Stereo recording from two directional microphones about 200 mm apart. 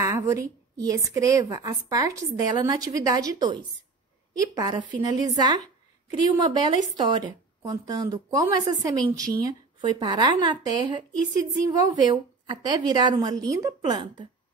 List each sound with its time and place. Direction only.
0.3 s a woman's voice: 15° right (ahead or behind)